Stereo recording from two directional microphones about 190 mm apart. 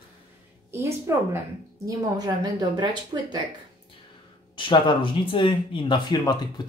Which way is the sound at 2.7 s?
20° right (ahead or behind).